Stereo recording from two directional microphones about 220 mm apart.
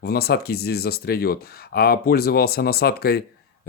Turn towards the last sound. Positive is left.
turn(degrees=45)  # may be behind; listen again after turning